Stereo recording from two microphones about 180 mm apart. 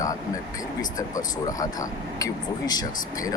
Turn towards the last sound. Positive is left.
turn(degrees=20)  # may be behind; listen again after turning